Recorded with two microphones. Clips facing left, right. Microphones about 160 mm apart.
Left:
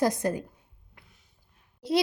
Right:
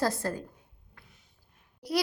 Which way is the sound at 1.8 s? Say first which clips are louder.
Left 4 dB; 25° left (ahead or behind).